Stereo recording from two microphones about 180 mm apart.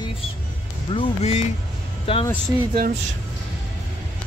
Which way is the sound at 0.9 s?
35° left (ahead or behind).